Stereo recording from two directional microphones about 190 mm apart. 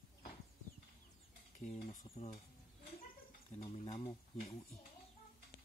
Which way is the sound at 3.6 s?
25° left (ahead or behind).